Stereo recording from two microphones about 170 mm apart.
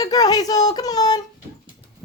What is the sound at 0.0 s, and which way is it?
Speech, 20° left (ahead or behind).